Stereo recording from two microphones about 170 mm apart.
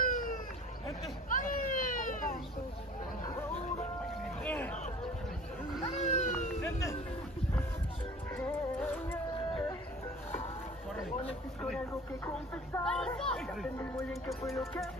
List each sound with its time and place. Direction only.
0.0 s a sound: 55° left (ahead or behind)
1.3 s children playing: 50° left (ahead or behind)
3.3 s music: 15° left (ahead or behind)
3.5 s music: 45° left (ahead or behind)
4.4 s hubbub: 10° left (ahead or behind)
5.9 s vehicle: 40° left (ahead or behind)
8.3 s music: 10° left (ahead or behind)
11.9 s a sound: 10° left (ahead or behind)
13.7 s music: 15° left (ahead or behind)